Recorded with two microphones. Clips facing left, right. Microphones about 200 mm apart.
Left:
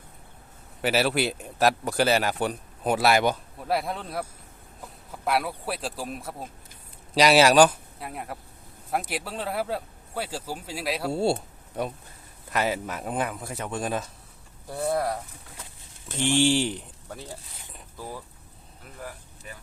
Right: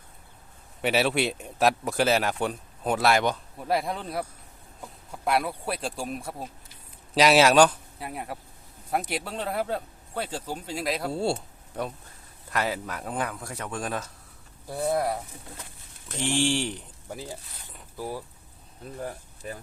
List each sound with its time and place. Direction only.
0.8 s a man's voice: centre (ahead or behind)
11.1 s speech: 25° left (ahead or behind)
12.5 s speech: 20° left (ahead or behind)
14.7 s a man's voice: centre (ahead or behind)
16.0 s speech: 25° left (ahead or behind)
17.1 s speech: 10° right (ahead or behind)
18.9 s speech: 30° right (ahead or behind)